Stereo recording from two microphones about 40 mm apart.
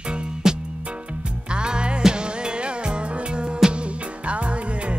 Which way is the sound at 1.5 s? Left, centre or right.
Right.